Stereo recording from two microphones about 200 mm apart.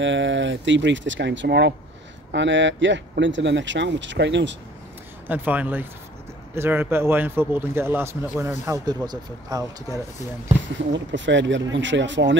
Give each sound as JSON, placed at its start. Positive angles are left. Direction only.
{"t": 0.0, "sound": "speech", "side_deg": -65}
{"t": 5.3, "sound": "speech", "side_deg": -10}
{"t": 10.9, "sound": "speech", "side_deg": -65}